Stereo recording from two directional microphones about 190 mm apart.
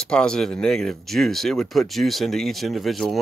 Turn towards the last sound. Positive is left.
turn(degrees=0)  # may be behind; listen again after turning